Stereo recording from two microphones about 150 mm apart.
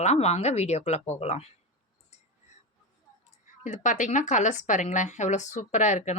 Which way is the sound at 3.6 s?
55° left (ahead or behind).